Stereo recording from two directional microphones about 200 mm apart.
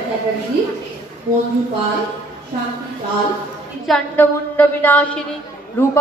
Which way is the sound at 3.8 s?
5° left (ahead or behind).